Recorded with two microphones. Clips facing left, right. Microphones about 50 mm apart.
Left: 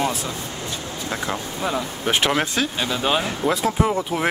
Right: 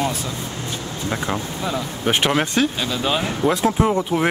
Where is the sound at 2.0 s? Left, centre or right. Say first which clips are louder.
Right 2 dB; centre.